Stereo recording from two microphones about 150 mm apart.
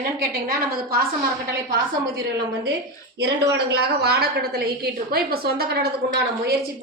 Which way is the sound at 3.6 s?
90° right.